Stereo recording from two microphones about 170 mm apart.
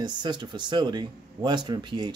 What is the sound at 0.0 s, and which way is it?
Speech, 25° right (ahead or behind).